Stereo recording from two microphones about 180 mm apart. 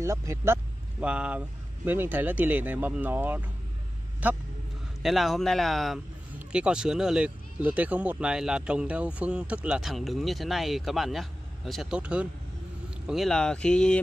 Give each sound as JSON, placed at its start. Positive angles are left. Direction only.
{"t": 0.0, "sound": "speech", "side_deg": -15}